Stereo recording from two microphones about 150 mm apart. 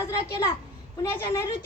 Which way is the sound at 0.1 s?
25° left (ahead or behind).